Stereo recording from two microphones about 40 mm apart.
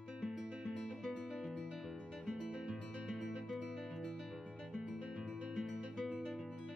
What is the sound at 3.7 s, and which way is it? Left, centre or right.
Music, centre.